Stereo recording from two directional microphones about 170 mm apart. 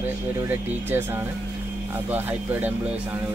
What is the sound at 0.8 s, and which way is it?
Speech, 10° right (ahead or behind).